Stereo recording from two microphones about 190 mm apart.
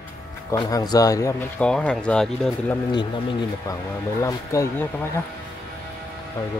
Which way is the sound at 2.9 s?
25° left (ahead or behind).